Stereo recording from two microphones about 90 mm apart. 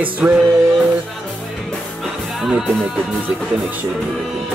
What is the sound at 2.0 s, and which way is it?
Music, 5° right (ahead or behind).